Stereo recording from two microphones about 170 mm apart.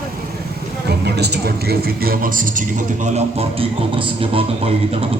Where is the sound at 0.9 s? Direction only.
75° right (ahead or behind).